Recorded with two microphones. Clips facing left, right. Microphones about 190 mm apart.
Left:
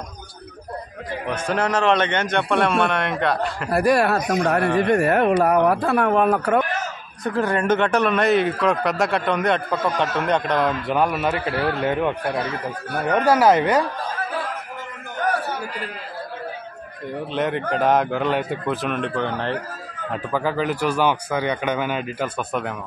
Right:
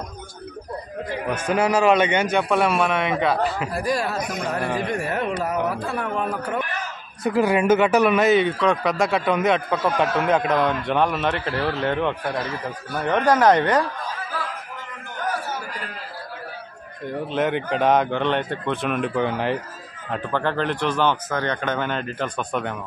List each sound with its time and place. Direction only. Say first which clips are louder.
1.2 s a man's voice: right 1 dB; 10° right (ahead or behind)
3.7 s speech: left 6 dB; 65° left (ahead or behind)
7.2 s a man's voice: right 2 dB; 10° right (ahead or behind); by 13.8 s 10° left (ahead or behind)
17.3 s a man's voice: even; centre (ahead or behind)
20.1 s speech: even; 5° left (ahead or behind)